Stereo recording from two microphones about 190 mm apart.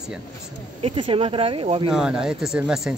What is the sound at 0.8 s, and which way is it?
Speech, 30° right (ahead or behind).